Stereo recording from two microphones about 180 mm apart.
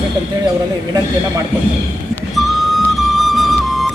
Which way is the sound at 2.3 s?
Centre (ahead or behind).